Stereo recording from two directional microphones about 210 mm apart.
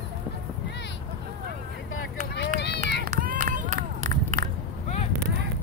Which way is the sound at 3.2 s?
40° right (ahead or behind).